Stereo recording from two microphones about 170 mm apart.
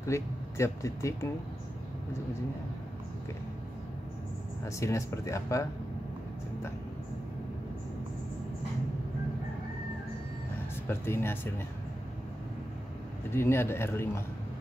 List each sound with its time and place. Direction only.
0.0 s speech: 15° left (ahead or behind)
4.6 s speech: 15° left (ahead or behind)
10.9 s speech: 15° left (ahead or behind)
13.3 s speech: 15° left (ahead or behind)